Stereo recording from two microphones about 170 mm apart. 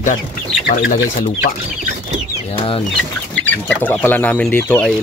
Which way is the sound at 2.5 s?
30° left (ahead or behind).